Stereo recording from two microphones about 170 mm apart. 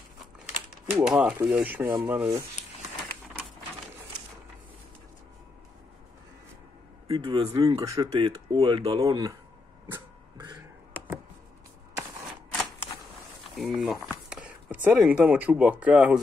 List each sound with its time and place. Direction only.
0.8 s speech: 10° right (ahead or behind)
7.1 s speech: 30° right (ahead or behind)
7.8 s speech: 20° right (ahead or behind)
8.1 s speech: 30° right (ahead or behind)
10.3 s a sound: 25° right (ahead or behind)
13.6 s speech: centre (ahead or behind)